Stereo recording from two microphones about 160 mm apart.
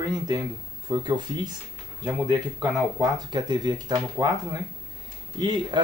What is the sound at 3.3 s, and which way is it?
Speech, 25° right (ahead or behind).